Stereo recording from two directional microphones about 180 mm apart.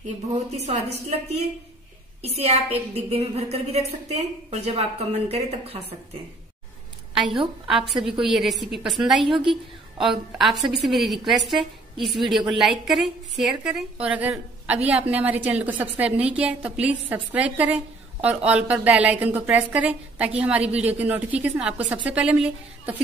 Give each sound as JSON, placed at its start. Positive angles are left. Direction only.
{"t": 0.0, "sound": "a woman's voice", "side_deg": -40}
{"t": 7.6, "sound": "a woman's voice", "side_deg": 0}